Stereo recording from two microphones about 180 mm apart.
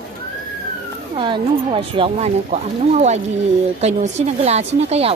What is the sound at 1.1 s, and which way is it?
Speech, 30° right (ahead or behind).